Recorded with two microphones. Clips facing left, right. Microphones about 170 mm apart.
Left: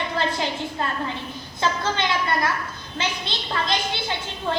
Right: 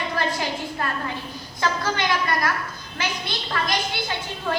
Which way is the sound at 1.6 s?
25° left (ahead or behind).